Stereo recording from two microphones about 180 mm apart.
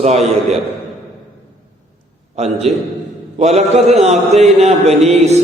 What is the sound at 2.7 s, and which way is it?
Speech, 35° right (ahead or behind).